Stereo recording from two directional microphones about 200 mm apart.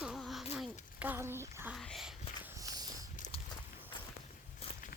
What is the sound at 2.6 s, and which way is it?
Walk, 20° right (ahead or behind).